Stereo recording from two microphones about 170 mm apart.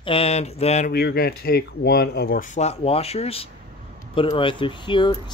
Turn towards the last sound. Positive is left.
turn(degrees=30)  # may be behind; listen again after turning